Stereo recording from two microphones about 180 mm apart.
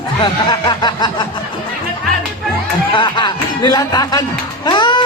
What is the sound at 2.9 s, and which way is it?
Speech, 25° left (ahead or behind).